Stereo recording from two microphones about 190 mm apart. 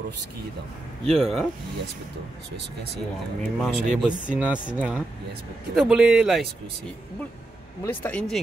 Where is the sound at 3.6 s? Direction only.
Centre (ahead or behind).